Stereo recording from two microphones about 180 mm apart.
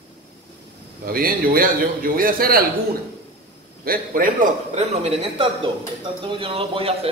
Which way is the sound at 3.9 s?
50° right (ahead or behind).